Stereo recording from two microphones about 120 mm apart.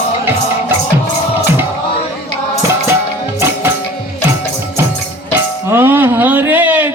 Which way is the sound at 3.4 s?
20° right (ahead or behind).